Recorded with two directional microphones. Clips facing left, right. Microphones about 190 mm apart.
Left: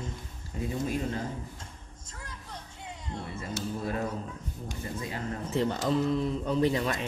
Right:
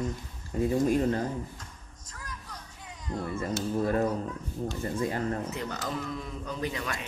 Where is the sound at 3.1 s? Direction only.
50° right (ahead or behind).